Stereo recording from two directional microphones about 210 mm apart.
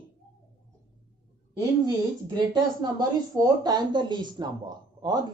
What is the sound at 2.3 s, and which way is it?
A man's voice, 20° right (ahead or behind).